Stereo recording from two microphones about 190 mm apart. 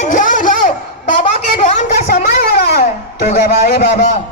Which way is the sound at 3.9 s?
35° left (ahead or behind).